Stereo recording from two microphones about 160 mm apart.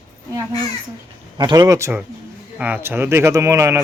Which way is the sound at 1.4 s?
25° right (ahead or behind).